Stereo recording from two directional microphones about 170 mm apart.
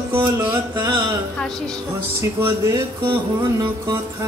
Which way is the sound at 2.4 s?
25° right (ahead or behind).